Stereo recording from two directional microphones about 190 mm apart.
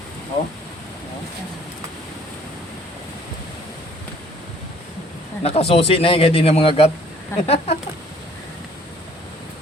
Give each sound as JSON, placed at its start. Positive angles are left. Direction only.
{"t": 5.4, "sound": "speech", "side_deg": 30}